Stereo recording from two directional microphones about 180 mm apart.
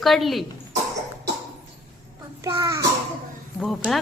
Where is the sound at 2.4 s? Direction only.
15° right (ahead or behind).